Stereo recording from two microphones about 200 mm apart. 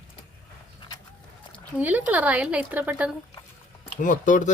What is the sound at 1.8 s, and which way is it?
A woman's voice, 10° right (ahead or behind).